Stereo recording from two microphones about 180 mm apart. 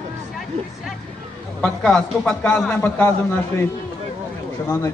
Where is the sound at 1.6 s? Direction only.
5° left (ahead or behind).